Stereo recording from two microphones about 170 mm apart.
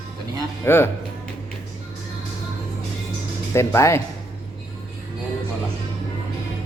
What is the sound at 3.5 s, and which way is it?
Speech, 15° left (ahead or behind).